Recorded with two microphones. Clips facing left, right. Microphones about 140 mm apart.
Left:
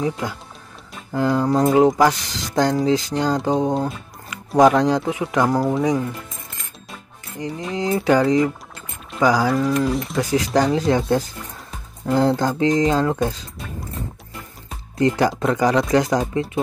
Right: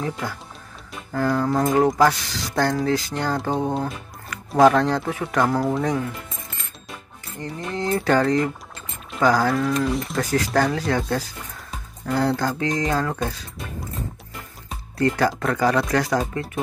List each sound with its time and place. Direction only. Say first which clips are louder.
0.0 s speech: left 4 dB; 15° left (ahead or behind)
5.6 s speech: left 3 dB; 5° left (ahead or behind)
7.3 s speech: left 3 dB; 15° left (ahead or behind)
10.3 s speech: left 3 dB; 15° left (ahead or behind)
15.0 s speech: left 2 dB; 20° left (ahead or behind)